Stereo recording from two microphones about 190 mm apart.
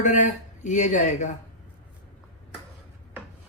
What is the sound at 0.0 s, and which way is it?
Speech, 40° left (ahead or behind).